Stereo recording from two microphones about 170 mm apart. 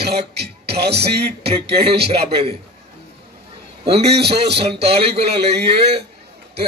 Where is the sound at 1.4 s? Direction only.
35° right (ahead or behind).